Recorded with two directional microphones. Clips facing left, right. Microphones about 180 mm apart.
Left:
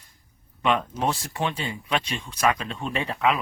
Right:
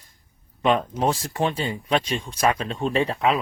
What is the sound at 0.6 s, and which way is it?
Speech, 35° right (ahead or behind).